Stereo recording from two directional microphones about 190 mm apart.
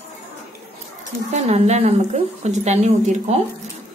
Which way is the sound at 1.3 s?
35° right (ahead or behind).